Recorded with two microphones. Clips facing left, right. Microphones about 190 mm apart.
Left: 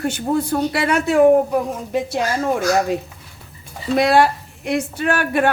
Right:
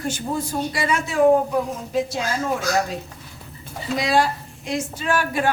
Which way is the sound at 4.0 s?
60° left (ahead or behind).